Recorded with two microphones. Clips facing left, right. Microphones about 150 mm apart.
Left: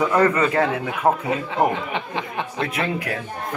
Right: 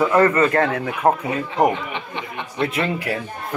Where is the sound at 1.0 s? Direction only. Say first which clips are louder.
Right 2 dB; 10° right (ahead or behind).